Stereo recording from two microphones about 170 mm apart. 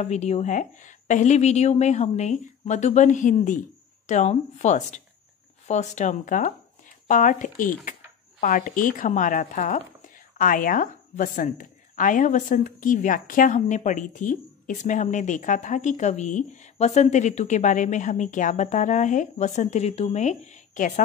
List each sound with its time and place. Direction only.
0.0 s speech: 40° left (ahead or behind)